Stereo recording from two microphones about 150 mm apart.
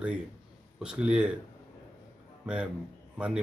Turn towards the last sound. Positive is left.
turn(degrees=-10)  # may be behind; listen again after turning